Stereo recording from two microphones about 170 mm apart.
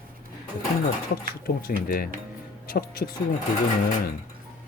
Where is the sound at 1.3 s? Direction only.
60° left (ahead or behind).